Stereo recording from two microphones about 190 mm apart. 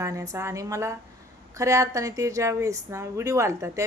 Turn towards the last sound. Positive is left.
turn(degrees=-15)  # may be behind; listen again after turning